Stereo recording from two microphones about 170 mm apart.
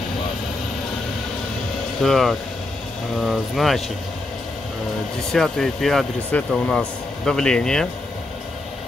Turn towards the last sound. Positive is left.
turn(degrees=5)  # may be behind; listen again after turning